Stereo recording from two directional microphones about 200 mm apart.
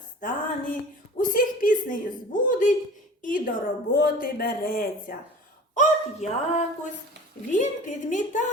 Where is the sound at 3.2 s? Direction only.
40° left (ahead or behind).